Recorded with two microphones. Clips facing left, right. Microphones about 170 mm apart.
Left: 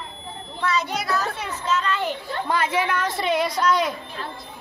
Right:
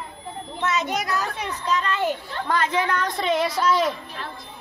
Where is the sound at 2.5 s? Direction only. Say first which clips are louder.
Even; 10° left (ahead or behind).